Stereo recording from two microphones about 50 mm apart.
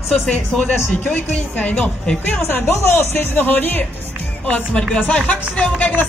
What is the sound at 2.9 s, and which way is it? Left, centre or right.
Speech, left.